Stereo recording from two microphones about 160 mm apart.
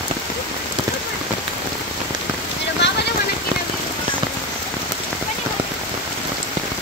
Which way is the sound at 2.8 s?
90° left.